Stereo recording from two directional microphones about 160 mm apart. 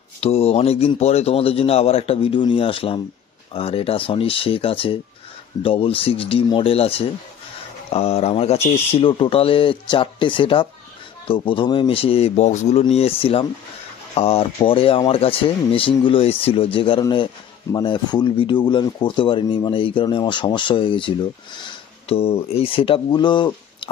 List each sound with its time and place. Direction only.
0.2 s a man's voice: 40° left (ahead or behind)
22.1 s speech: 40° left (ahead or behind)